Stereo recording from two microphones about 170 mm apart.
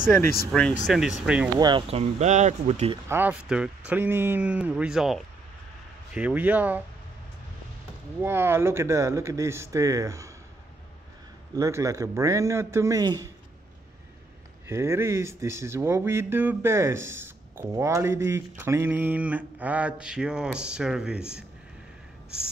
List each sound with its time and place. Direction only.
0.5 s speech: 5° left (ahead or behind)
1.6 s speech: 25° right (ahead or behind); by 2.9 s 45° right (ahead or behind)
3.1 s speech: 10° right (ahead or behind)
8.2 s speech: 15° right (ahead or behind)
11.5 s a man's voice: 20° right (ahead or behind)
14.7 s speech: 15° right (ahead or behind)